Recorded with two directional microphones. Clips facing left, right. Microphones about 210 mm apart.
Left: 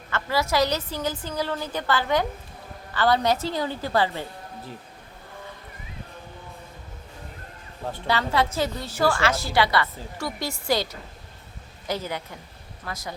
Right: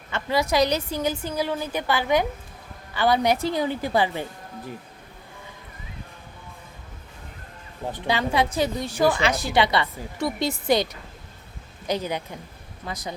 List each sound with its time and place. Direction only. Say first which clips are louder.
0.1 s a woman's voice: right 2 dB; 15° right (ahead or behind)
7.9 s a woman's voice: right 1 dB; 15° right (ahead or behind)
11.9 s a woman's voice: right 3 dB; 20° right (ahead or behind)